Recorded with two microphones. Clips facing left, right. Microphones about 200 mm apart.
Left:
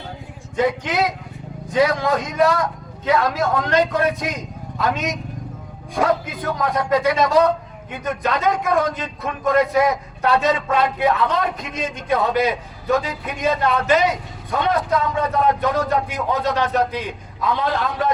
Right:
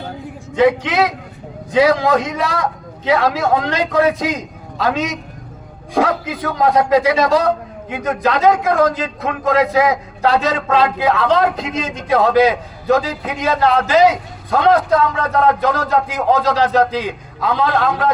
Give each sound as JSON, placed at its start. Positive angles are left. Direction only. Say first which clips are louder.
{"t": 0.5, "sound": "a man's voice", "louder": "right 6 dB", "side_deg": -75}
{"t": 11.0, "sound": "a man's voice", "louder": "right 4 dB", "side_deg": -90}